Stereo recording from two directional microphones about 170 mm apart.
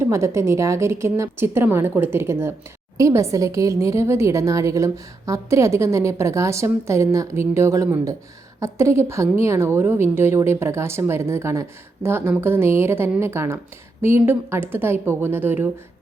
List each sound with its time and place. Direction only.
0.0 s a woman's voice: 15° right (ahead or behind)